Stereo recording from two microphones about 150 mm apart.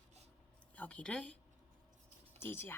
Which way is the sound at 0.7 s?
10° left (ahead or behind).